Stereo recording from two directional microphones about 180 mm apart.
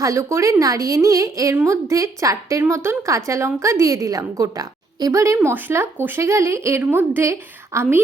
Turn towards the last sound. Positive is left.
turn(degrees=-15)  # may be behind; listen again after turning